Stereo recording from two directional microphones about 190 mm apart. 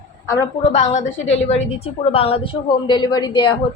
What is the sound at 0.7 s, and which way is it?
A woman's voice, 40° left (ahead or behind).